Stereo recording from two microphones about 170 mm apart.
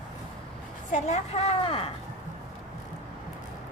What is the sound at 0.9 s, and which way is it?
Speech, 40° left (ahead or behind).